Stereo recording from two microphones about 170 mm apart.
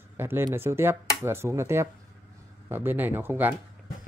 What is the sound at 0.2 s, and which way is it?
Speech, 15° right (ahead or behind).